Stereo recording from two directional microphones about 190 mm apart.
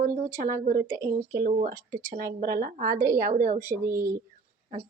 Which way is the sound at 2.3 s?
55° right (ahead or behind).